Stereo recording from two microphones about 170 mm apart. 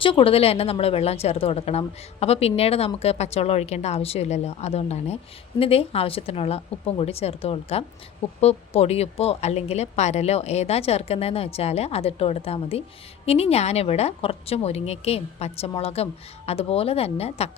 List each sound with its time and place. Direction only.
0.0 s a woman's voice: 30° left (ahead or behind)